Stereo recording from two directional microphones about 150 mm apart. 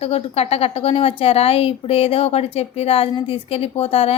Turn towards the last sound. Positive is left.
turn(degrees=40)  # may be behind; listen again after turning